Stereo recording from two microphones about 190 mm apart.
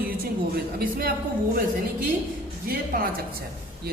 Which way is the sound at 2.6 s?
50° right (ahead or behind).